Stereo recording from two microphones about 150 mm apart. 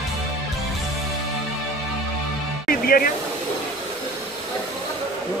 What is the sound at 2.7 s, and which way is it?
Music, 75° left (ahead or behind).